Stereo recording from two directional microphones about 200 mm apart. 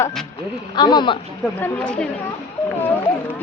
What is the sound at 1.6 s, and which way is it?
Speech, 5° left (ahead or behind).